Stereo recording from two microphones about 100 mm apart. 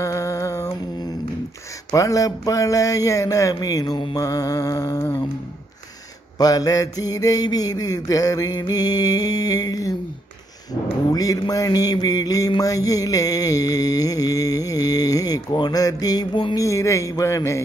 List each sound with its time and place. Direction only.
0.0 s a sound: 30° left (ahead or behind)
1.9 s mantra: 35° left (ahead or behind)
6.3 s mantra: 40° left (ahead or behind)
11.1 s mantra: 40° left (ahead or behind)